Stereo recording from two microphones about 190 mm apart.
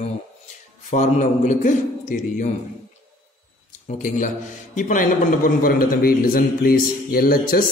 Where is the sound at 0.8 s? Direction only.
40° left (ahead or behind).